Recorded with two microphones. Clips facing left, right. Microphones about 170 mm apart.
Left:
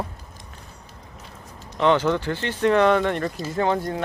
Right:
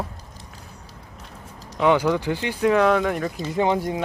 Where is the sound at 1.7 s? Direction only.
10° right (ahead or behind).